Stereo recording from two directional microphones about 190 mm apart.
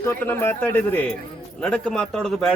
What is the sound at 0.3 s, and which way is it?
Speech, 10° left (ahead or behind).